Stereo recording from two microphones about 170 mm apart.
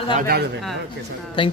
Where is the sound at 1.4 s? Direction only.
30° left (ahead or behind).